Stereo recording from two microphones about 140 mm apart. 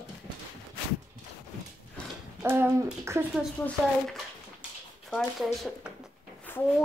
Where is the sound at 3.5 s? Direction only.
10° left (ahead or behind).